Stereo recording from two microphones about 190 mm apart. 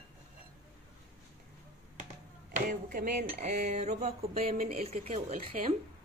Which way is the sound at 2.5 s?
45° right (ahead or behind).